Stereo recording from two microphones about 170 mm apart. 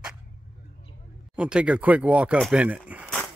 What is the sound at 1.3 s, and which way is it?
Speech, 5° right (ahead or behind).